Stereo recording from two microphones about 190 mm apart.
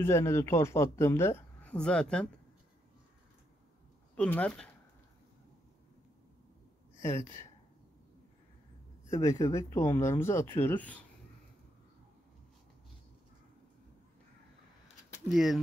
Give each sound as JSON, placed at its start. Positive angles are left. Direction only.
{"t": 0.0, "sound": "speech", "side_deg": 15}
{"t": 4.2, "sound": "speech", "side_deg": 5}
{"t": 9.0, "sound": "speech", "side_deg": 15}
{"t": 15.3, "sound": "speech", "side_deg": 0}